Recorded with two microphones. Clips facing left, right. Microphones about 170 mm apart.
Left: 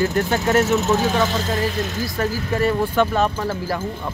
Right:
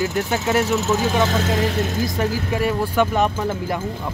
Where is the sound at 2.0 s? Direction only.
15° right (ahead or behind).